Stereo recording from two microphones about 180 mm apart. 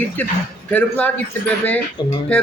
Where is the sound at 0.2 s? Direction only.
10° left (ahead or behind).